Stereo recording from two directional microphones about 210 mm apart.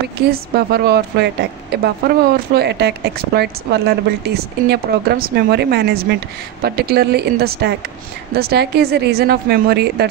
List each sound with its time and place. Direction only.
0.3 s a woman's voice: 50° right (ahead or behind)